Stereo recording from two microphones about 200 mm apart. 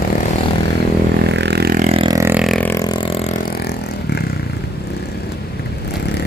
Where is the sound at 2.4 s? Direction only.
5° left (ahead or behind).